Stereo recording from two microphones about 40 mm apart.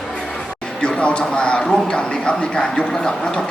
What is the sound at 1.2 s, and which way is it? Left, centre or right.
Speech, left.